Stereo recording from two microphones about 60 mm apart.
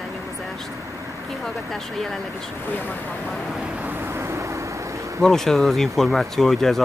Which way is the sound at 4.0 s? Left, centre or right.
Right.